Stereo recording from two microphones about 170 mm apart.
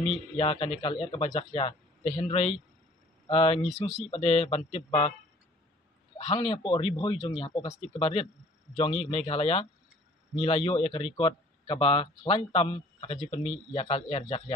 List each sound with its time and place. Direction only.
0.4 s speech: 35° left (ahead or behind)
3.6 s speech: 5° right (ahead or behind)
4.1 s speech: 35° left (ahead or behind)
6.1 s speech: 35° left (ahead or behind)